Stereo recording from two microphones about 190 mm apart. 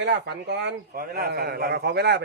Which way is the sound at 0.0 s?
65° right (ahead or behind).